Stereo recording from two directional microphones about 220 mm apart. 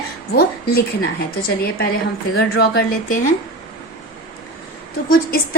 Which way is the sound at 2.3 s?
45° left (ahead or behind).